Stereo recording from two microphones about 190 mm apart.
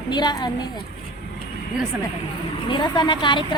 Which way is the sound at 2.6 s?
25° left (ahead or behind).